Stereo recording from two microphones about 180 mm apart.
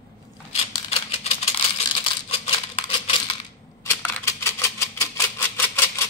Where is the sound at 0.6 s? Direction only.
35° left (ahead or behind).